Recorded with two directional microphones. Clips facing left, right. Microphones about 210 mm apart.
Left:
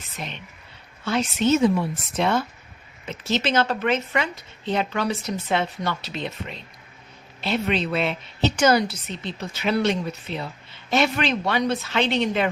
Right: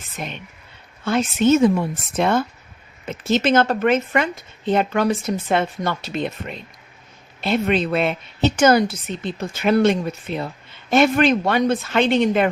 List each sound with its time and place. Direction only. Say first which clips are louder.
1.0 s a woman's voice: right 4 dB; 50° right (ahead or behind)